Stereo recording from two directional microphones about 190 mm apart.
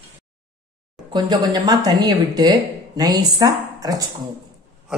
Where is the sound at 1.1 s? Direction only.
20° right (ahead or behind).